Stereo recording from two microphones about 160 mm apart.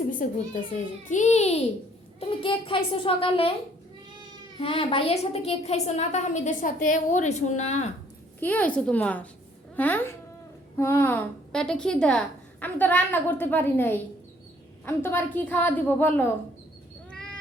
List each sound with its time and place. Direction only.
0.1 s a child's voice: 55° left (ahead or behind)
1.1 s a woman's voice: 45° left (ahead or behind)
2.2 s a child's voice: 35° left (ahead or behind)
4.6 s a woman's voice: 40° left (ahead or behind)
8.4 s a woman's voice: 10° left (ahead or behind)
17.1 s cat: 5° left (ahead or behind)